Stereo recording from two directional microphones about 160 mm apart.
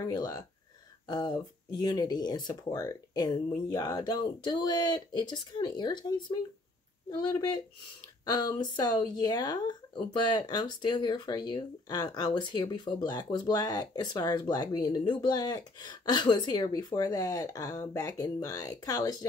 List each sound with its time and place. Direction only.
0.0 s speech: 25° left (ahead or behind)